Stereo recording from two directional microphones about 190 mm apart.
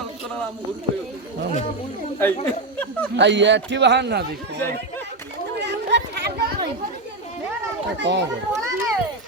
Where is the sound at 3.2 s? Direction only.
70° right (ahead or behind).